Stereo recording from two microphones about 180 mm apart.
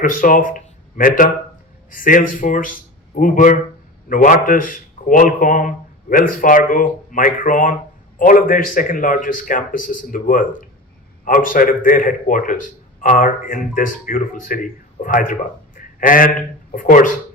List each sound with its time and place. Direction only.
0.0 s speech: 50° left (ahead or behind)